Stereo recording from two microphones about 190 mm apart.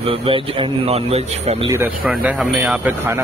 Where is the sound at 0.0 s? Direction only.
30° right (ahead or behind).